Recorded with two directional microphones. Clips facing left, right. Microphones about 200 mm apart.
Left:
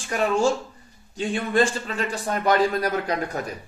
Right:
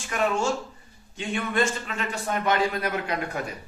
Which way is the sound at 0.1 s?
35° left (ahead or behind).